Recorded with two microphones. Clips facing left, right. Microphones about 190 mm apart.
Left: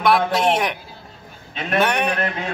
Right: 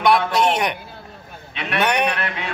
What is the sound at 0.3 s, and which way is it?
Speech, 5° left (ahead or behind).